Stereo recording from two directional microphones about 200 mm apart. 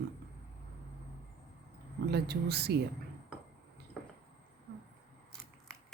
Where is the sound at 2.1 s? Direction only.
55° right (ahead or behind).